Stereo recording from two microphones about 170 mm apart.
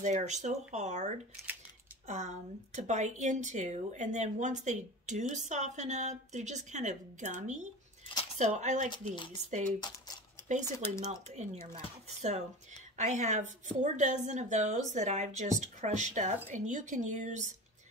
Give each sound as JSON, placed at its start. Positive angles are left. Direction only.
{"t": 0.0, "sound": "a woman's voice", "side_deg": -45}
{"t": 8.1, "sound": "a sound", "side_deg": 35}
{"t": 8.4, "sound": "a woman's voice", "side_deg": -45}
{"t": 8.9, "sound": "speech", "side_deg": 30}
{"t": 9.3, "sound": "a woman's voice", "side_deg": -45}
{"t": 9.8, "sound": "speech", "side_deg": 25}
{"t": 11.1, "sound": "a woman's voice", "side_deg": -40}